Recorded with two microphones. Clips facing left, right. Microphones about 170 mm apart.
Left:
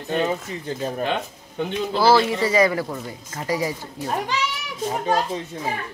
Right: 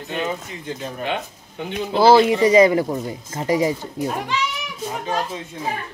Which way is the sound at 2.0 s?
20° right (ahead or behind).